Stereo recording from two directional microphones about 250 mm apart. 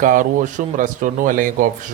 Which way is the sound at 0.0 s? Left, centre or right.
Right.